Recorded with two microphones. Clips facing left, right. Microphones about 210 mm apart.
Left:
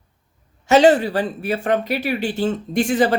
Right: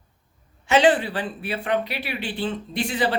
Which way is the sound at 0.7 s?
40° left (ahead or behind).